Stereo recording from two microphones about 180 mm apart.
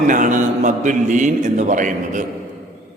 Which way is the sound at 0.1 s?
45° right (ahead or behind).